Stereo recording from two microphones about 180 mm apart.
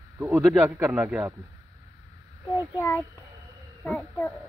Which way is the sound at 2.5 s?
15° left (ahead or behind).